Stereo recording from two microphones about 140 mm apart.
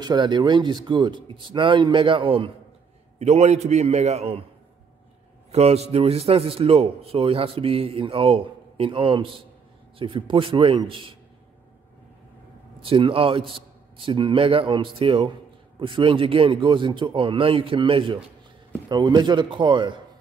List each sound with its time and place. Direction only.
0.0 s speech: 30° right (ahead or behind)
3.2 s a man's voice: 50° right (ahead or behind)
5.5 s a man's voice: 50° right (ahead or behind)
12.8 s speech: 40° right (ahead or behind)